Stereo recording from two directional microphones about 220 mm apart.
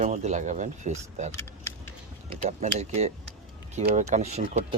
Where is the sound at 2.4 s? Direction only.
30° right (ahead or behind).